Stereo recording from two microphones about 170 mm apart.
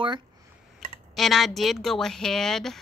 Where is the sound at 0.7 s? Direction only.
Centre (ahead or behind).